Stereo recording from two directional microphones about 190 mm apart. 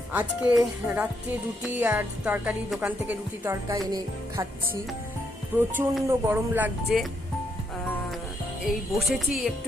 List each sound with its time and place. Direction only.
0.1 s speech: 10° right (ahead or behind)
5.5 s speech: 10° right (ahead or behind)
8.6 s music: centre (ahead or behind)